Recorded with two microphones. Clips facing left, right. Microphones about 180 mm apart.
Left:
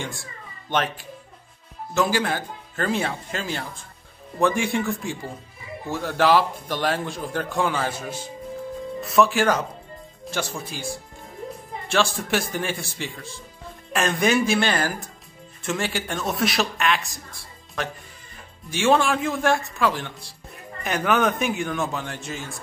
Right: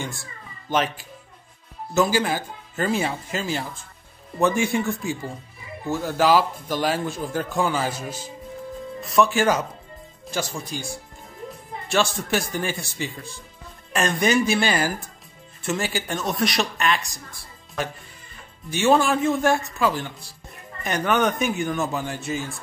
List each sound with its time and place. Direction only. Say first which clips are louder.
0.0 s a man's voice: even; centre (ahead or behind)
9.0 s a man's voice: even; centre (ahead or behind)